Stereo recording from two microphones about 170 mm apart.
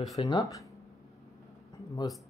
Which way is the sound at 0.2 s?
25° left (ahead or behind).